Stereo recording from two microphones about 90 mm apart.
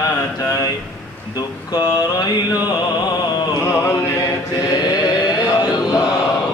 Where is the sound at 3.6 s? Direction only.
30° left (ahead or behind).